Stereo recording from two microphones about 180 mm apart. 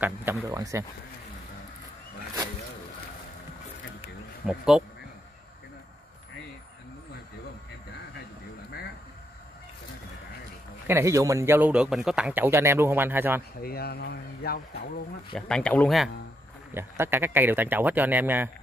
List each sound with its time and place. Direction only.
0.0 s a man's voice: 10° right (ahead or behind)
4.5 s speech: 5° right (ahead or behind)
10.9 s a man's voice: 15° right (ahead or behind)
13.6 s speech: 60° left (ahead or behind)
15.3 s speech: 5° left (ahead or behind)
16.7 s a man's voice: 15° right (ahead or behind)